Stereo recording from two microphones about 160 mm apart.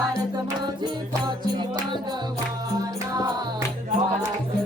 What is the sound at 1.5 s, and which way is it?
Music, 30° right (ahead or behind).